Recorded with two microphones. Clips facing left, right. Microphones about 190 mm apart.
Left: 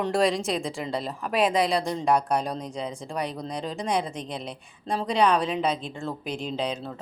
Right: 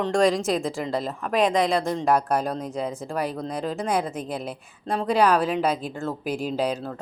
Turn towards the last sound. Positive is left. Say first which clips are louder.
# right 4 dB
turn(degrees=-5)  # may be behind; listen again after turning